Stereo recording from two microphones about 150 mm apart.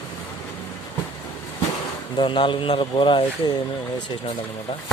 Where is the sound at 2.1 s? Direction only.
35° left (ahead or behind).